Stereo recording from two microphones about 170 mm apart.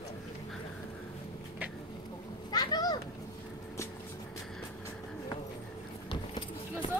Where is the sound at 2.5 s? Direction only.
25° left (ahead or behind).